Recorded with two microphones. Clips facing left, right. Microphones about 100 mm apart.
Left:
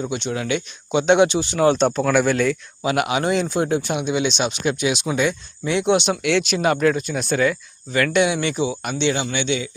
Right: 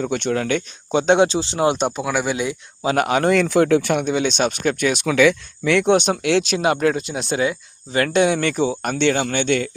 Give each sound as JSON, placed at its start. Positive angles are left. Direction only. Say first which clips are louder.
{"t": 0.0, "sound": "speech", "louder": "right 4 dB", "side_deg": -55}
{"t": 1.7, "sound": "speech", "louder": "left 4 dB", "side_deg": -10}
{"t": 2.8, "sound": "speech", "louder": "right 3 dB", "side_deg": -40}
{"t": 3.4, "sound": "speech", "louder": "right 5 dB", "side_deg": -70}
{"t": 5.0, "sound": "speech", "louder": "right 6 dB", "side_deg": -90}
{"t": 5.8, "sound": "speech", "louder": "right 2 dB", "side_deg": -45}
{"t": 7.1, "sound": "speech", "louder": "left 1 dB", "side_deg": -20}
{"t": 7.9, "sound": "speech", "louder": "right 1 dB", "side_deg": -35}